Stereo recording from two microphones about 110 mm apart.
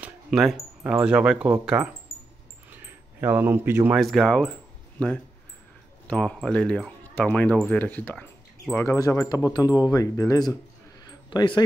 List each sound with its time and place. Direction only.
0.3 s speech: centre (ahead or behind)
2.7 s a sound: 20° right (ahead or behind)
3.9 s speech: centre (ahead or behind)
8.7 s speech: 30° left (ahead or behind)